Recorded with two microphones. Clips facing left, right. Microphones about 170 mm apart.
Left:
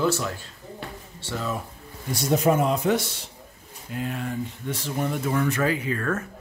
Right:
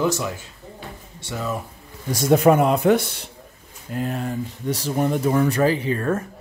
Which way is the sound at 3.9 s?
40° right (ahead or behind).